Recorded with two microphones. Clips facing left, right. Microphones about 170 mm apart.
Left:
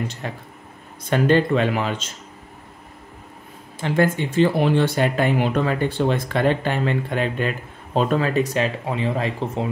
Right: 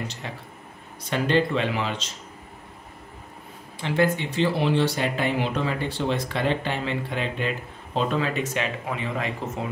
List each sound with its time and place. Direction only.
0.2 s speech: 50° left (ahead or behind)
3.8 s speech: 45° left (ahead or behind)